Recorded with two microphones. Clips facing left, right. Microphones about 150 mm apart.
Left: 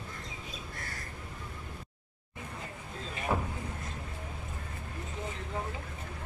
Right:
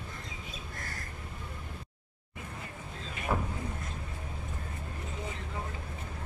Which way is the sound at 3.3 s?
Centre (ahead or behind).